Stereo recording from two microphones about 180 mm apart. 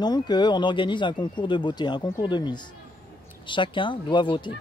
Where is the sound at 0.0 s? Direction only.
25° left (ahead or behind).